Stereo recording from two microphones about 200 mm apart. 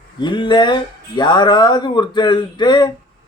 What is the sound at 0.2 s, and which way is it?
Speech, 25° left (ahead or behind).